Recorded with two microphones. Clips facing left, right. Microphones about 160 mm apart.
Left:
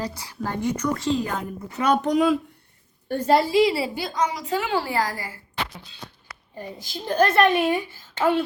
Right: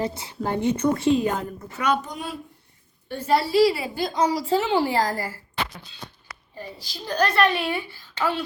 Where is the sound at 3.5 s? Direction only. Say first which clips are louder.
Even; 25° left (ahead or behind).